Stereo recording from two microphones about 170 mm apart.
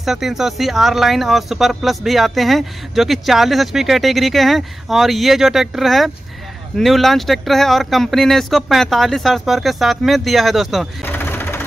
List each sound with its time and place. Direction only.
0.0 s speech: centre (ahead or behind)
11.1 s vehicle: 10° left (ahead or behind)